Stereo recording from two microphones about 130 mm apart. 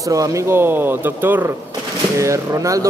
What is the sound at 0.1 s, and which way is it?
Speech, 25° right (ahead or behind).